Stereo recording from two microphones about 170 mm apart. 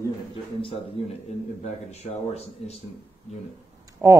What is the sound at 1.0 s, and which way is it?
Speech, 35° left (ahead or behind).